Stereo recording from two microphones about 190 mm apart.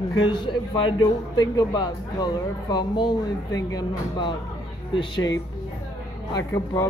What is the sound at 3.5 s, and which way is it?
A man's voice, 20° left (ahead or behind).